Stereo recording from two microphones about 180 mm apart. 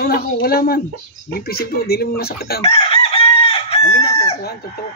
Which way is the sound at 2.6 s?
30° left (ahead or behind).